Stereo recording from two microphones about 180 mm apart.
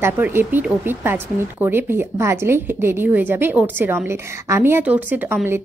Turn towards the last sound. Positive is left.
turn(degrees=-10)  # may be behind; listen again after turning